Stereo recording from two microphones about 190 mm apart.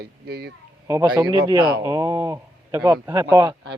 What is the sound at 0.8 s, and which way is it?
A man's voice, 20° right (ahead or behind).